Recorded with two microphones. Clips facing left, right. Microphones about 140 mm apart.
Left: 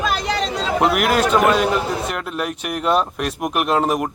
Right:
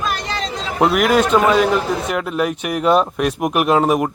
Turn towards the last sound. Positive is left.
turn(degrees=-5)  # may be behind; listen again after turning